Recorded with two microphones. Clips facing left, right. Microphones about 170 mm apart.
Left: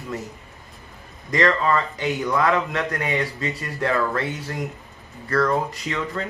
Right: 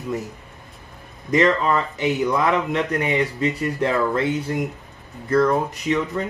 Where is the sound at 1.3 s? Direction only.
20° right (ahead or behind).